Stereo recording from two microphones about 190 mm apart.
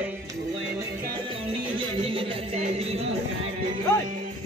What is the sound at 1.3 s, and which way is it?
Music, 30° right (ahead or behind).